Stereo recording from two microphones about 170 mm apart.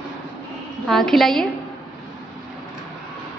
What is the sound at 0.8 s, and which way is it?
Speech, centre (ahead or behind).